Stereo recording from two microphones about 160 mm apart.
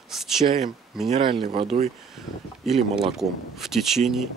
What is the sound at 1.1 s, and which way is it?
Speech, 35° right (ahead or behind).